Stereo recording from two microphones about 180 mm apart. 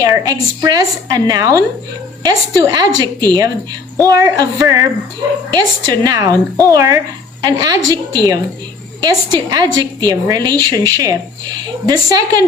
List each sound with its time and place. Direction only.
0.0 s a woman's voice: 20° right (ahead or behind)
6.0 s a woman's voice: 20° right (ahead or behind)